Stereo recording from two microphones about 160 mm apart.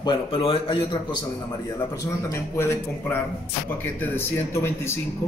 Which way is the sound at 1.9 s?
20° left (ahead or behind).